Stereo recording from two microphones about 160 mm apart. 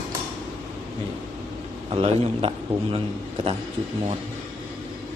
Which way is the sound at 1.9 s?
35° right (ahead or behind).